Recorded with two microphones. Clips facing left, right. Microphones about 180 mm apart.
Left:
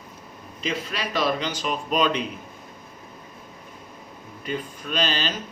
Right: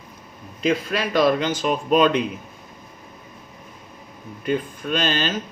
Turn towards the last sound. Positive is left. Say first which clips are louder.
# right 3 dB
turn(degrees=-50)  # may be behind; listen again after turning